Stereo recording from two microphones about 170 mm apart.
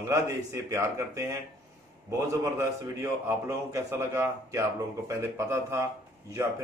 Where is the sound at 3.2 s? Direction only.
15° right (ahead or behind).